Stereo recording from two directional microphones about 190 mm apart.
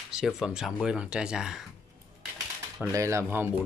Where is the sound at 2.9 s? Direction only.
15° right (ahead or behind).